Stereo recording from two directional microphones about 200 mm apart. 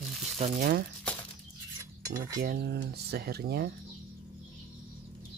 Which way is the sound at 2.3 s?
50° right (ahead or behind).